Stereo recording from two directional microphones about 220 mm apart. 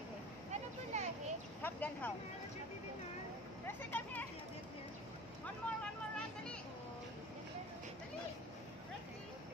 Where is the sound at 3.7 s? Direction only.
10° left (ahead or behind).